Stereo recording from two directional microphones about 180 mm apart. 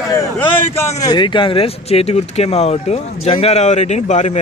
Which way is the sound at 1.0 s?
25° left (ahead or behind).